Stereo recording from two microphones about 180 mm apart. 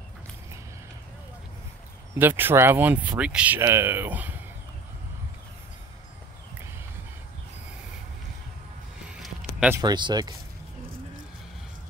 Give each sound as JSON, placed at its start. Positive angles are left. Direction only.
{"t": 2.1, "sound": "speech", "side_deg": -10}
{"t": 9.8, "sound": "speech", "side_deg": -25}